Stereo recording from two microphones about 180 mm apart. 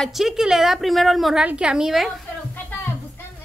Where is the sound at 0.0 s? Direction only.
Centre (ahead or behind).